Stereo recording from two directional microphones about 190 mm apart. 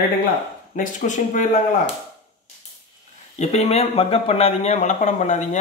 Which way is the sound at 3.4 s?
35° left (ahead or behind).